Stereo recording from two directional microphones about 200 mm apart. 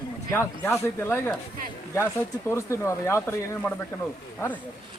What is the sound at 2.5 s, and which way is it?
Speech, 15° left (ahead or behind).